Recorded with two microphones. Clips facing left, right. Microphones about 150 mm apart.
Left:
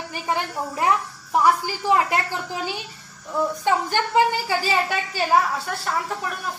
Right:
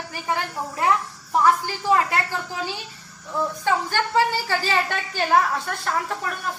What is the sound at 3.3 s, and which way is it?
A woman's voice, 15° left (ahead or behind).